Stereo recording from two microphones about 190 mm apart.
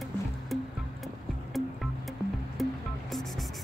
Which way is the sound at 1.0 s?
Centre (ahead or behind).